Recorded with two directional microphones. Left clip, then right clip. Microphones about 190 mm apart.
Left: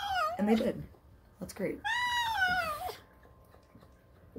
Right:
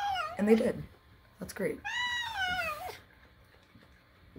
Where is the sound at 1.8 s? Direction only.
10° left (ahead or behind).